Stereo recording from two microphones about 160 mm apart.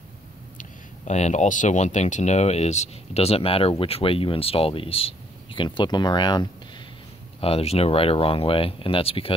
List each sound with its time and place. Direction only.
0.6 s speech: 45° left (ahead or behind); by 6.5 s 25° left (ahead or behind)
7.3 s speech: 40° left (ahead or behind)